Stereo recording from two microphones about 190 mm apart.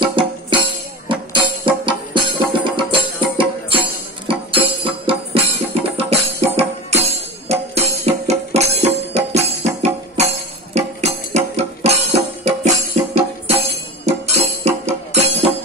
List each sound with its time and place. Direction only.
0.0 s music: 25° right (ahead or behind)